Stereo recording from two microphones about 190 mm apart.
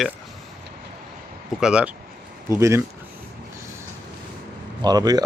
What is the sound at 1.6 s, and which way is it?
Speech, 5° right (ahead or behind).